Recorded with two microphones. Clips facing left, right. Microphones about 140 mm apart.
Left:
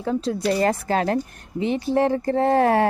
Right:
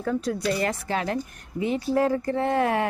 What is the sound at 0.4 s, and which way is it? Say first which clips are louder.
Speech: left 5 dB; 35° left (ahead or behind).